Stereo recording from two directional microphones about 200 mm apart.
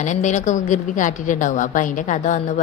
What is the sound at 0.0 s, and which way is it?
A woman's voice, 40° left (ahead or behind).